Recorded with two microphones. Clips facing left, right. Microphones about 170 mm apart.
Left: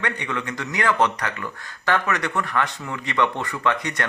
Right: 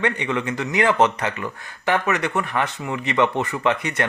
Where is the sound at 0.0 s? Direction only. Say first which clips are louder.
Right 5 dB; 20° right (ahead or behind).